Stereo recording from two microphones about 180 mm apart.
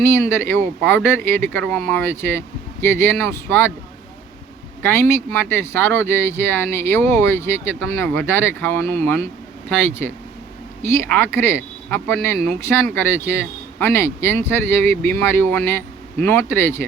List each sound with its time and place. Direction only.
0.0 s speech: 15° left (ahead or behind)
4.8 s speech: 10° left (ahead or behind)
10.8 s speech: 15° left (ahead or behind)